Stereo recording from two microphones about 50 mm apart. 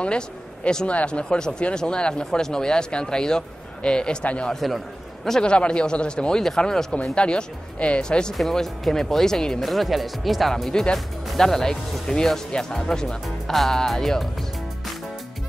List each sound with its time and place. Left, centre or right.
0.7 s speech: centre
4.2 s speech: left
4.5 s a man's voice: centre
5.4 s speech: centre
8.4 s speech: centre
9.7 s speech: centre
10.5 s speech: centre